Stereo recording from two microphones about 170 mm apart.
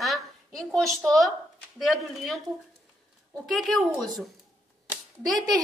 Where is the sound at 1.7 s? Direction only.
Centre (ahead or behind).